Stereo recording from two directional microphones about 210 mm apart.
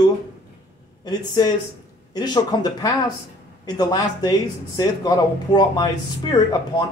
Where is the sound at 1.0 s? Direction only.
20° left (ahead or behind).